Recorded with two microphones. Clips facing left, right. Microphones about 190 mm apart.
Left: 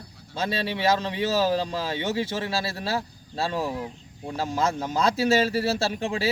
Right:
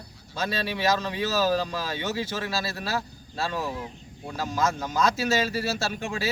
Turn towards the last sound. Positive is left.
turn(degrees=30)  # may be behind; listen again after turning